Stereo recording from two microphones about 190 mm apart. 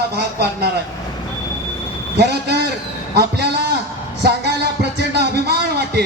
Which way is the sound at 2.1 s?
60° right (ahead or behind).